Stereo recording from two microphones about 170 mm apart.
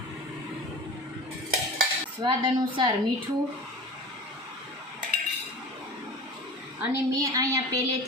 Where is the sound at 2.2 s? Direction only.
25° right (ahead or behind).